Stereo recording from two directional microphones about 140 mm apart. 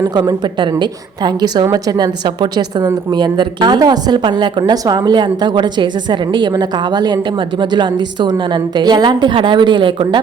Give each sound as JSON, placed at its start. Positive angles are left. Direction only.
{"t": 0.1, "sound": "a woman's voice", "side_deg": -30}